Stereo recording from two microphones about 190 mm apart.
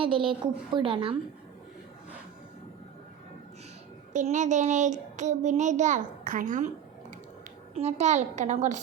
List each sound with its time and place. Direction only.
0.0 s a woman's voice: 25° right (ahead or behind)
4.1 s child singing: 40° right (ahead or behind)
7.8 s child singing: 35° right (ahead or behind)